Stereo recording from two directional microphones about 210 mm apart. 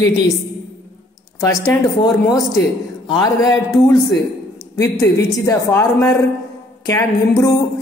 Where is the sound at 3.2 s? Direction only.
15° left (ahead or behind).